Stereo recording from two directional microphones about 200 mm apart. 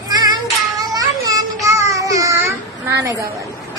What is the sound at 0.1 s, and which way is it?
Child singing, 20° right (ahead or behind).